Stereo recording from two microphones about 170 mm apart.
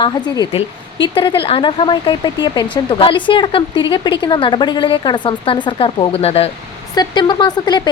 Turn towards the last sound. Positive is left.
turn(degrees=25)  # may be behind; listen again after turning